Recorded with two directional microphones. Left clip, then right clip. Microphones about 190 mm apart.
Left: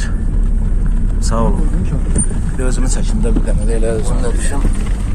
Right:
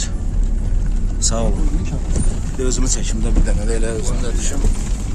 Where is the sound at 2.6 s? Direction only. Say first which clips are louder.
Right 1 dB; 15° right (ahead or behind).